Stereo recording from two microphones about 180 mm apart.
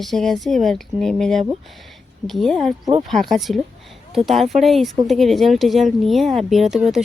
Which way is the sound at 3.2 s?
Centre (ahead or behind).